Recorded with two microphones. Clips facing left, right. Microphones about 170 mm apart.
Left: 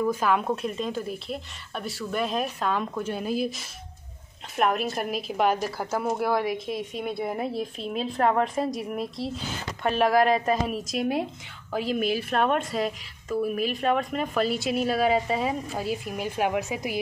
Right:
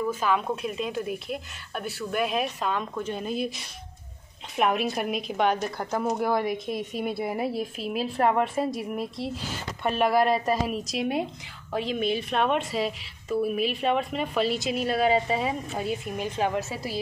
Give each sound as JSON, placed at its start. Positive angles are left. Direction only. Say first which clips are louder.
{"t": 0.6, "sound": "a woman's voice", "louder": "even", "side_deg": -5}